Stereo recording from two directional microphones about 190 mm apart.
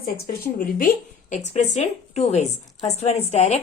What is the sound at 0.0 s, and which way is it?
A woman's voice, 50° left (ahead or behind).